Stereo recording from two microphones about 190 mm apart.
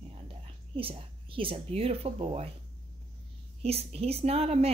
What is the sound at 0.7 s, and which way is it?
A woman's voice, 30° right (ahead or behind).